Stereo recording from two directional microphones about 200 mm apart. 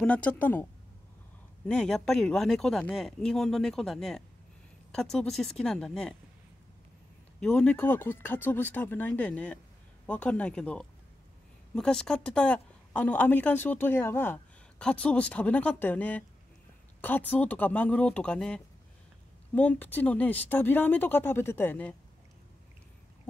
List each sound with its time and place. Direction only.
0.0 s a woman's voice: 5° left (ahead or behind)
1.7 s speech: 5° left (ahead or behind)
7.3 s a woman's voice: 5° left (ahead or behind)